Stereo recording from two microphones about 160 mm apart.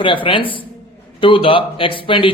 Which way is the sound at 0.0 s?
30° left (ahead or behind).